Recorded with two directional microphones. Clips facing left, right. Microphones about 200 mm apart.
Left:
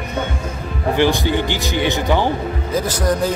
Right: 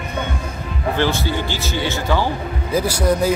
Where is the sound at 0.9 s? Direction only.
15° left (ahead or behind).